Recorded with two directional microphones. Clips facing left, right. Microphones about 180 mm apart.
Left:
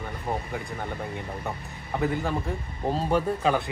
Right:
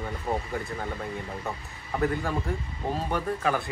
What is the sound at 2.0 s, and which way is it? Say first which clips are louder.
Speech: even; centre (ahead or behind).